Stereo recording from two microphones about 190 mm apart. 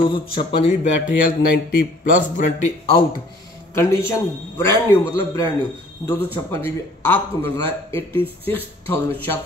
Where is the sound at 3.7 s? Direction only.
15° left (ahead or behind).